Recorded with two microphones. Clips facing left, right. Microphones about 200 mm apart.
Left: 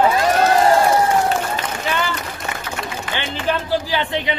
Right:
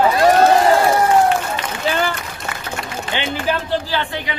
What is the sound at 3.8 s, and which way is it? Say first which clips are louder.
Speech: left 2 dB; 20° left (ahead or behind).